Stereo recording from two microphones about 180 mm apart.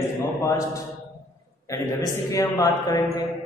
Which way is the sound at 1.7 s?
15° left (ahead or behind).